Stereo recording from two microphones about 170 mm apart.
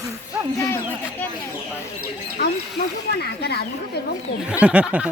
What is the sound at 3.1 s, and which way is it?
Speech, 65° left (ahead or behind).